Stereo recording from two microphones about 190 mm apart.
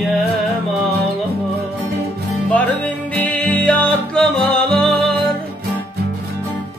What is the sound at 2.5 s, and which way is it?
Music, 5° left (ahead or behind).